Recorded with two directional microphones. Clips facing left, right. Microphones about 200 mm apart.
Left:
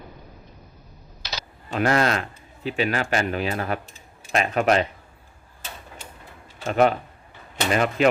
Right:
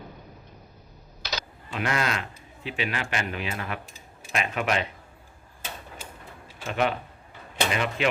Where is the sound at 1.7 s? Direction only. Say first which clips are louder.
Left 7 dB; 40° left (ahead or behind).